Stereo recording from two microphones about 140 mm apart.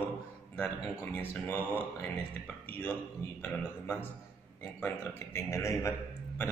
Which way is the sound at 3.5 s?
15° left (ahead or behind).